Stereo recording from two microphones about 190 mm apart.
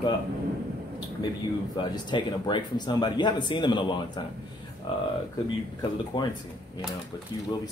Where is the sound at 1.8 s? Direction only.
25° left (ahead or behind).